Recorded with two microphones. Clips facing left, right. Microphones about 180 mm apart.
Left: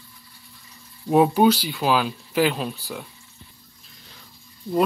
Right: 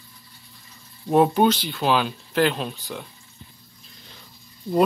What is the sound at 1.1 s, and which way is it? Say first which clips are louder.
Speech: left 1 dB; 5° left (ahead or behind).